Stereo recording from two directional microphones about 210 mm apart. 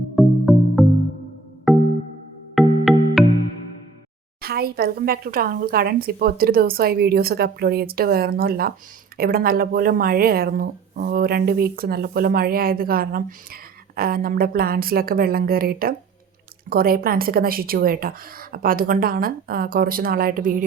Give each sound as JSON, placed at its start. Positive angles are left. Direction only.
{"t": 0.2, "sound": "music", "side_deg": 0}
{"t": 4.4, "sound": "speech", "side_deg": -45}